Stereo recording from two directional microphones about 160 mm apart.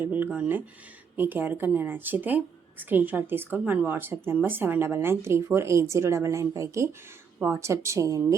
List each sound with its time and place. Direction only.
0.0 s speech: 10° right (ahead or behind)